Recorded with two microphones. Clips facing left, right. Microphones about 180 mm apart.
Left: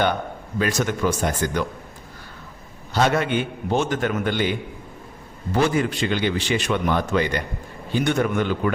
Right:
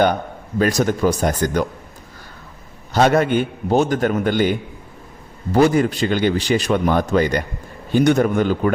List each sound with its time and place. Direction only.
0.6 s a man's voice: 35° right (ahead or behind)
2.9 s a man's voice: 45° right (ahead or behind)
5.5 s a man's voice: 40° right (ahead or behind)